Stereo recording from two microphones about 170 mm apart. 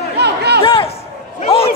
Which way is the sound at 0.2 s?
80° right.